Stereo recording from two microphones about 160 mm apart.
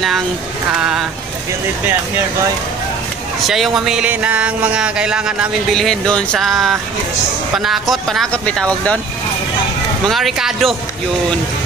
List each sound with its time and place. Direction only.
0.7 s speech: 5° right (ahead or behind)
3.4 s speech: centre (ahead or behind)
10.0 s speech: centre (ahead or behind)